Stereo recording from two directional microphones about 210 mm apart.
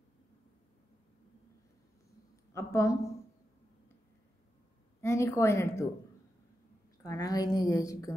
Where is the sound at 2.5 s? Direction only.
15° left (ahead or behind).